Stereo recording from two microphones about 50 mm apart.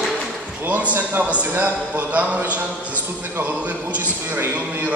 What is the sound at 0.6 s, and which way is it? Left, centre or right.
A man's voice, right.